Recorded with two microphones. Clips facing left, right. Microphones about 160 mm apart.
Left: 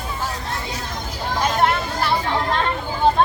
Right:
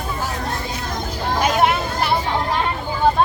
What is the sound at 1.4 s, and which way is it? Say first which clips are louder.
Speech: right 2 dB; 10° right (ahead or behind).